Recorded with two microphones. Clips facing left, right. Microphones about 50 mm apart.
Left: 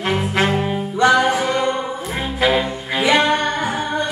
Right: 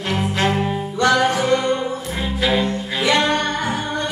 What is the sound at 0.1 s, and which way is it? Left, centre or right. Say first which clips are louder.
Music: left 1 dB; centre.